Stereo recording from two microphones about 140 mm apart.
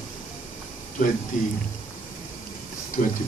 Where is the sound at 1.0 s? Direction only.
70° left (ahead or behind).